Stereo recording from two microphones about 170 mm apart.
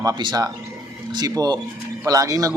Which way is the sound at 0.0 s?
25° right (ahead or behind).